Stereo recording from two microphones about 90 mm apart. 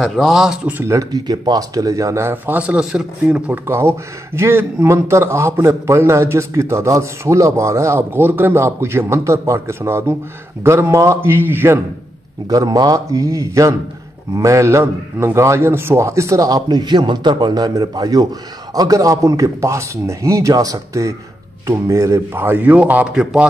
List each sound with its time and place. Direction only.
0.0 s speech: centre (ahead or behind)
0.8 s a man's voice: 40° right (ahead or behind); by 3.6 s 15° right (ahead or behind)
3.6 s a man's voice: 30° right (ahead or behind)
12.4 s a man's voice: 45° right (ahead or behind); by 23.4 s 10° right (ahead or behind)